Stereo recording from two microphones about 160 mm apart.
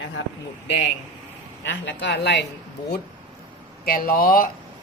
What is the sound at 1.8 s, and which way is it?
Speech, 90° left.